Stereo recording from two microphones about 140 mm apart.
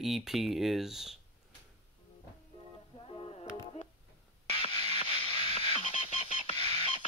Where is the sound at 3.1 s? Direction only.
40° left (ahead or behind).